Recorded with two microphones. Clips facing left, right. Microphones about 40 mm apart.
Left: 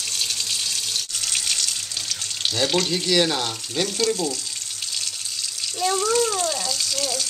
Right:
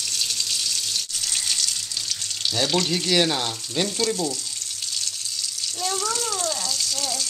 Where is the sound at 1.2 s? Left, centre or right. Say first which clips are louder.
Left 1 dB; left.